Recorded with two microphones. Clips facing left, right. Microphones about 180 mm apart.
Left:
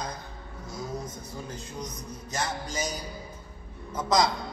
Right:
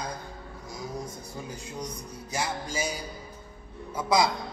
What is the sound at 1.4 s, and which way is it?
Music, 10° right (ahead or behind).